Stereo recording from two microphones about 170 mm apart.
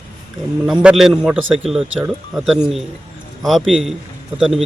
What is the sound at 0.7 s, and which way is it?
A man's voice, 5° right (ahead or behind).